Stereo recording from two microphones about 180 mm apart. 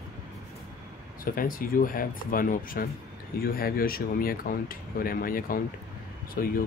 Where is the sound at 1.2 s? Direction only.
50° left (ahead or behind).